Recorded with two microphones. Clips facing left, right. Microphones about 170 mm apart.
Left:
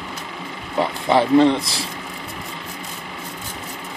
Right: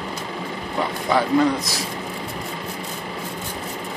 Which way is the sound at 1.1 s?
25° left (ahead or behind).